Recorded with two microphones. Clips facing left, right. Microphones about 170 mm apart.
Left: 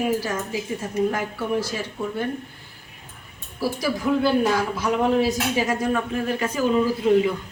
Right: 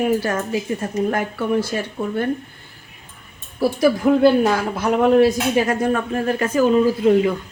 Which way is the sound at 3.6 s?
55° right (ahead or behind).